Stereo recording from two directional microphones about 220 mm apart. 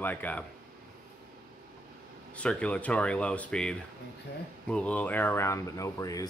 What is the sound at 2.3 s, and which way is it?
Speech, 5° left (ahead or behind).